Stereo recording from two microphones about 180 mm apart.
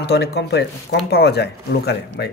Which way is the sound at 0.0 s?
65° left (ahead or behind).